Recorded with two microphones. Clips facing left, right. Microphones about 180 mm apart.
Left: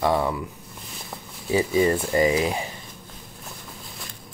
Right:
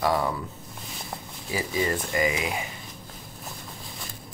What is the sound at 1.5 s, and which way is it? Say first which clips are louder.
Speech: left 7 dB; 30° left (ahead or behind).